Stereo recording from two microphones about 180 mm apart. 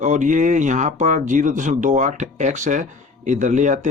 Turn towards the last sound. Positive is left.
turn(degrees=-45)  # may be behind; listen again after turning